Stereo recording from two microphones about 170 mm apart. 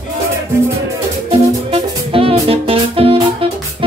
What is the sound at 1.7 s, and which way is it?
Music, 35° right (ahead or behind).